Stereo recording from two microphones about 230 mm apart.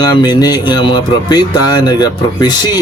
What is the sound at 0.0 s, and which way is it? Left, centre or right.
Speech, centre.